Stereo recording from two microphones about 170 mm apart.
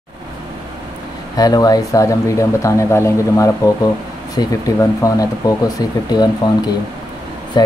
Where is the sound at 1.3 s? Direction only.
20° left (ahead or behind).